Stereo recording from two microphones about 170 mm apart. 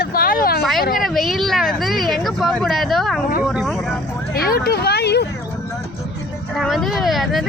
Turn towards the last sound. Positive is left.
turn(degrees=0)  # may be behind; listen again after turning